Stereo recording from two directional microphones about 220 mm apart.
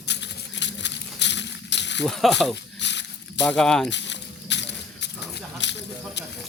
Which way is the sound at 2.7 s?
55° left (ahead or behind).